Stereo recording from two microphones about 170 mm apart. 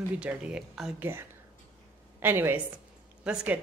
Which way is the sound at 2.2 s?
10° right (ahead or behind).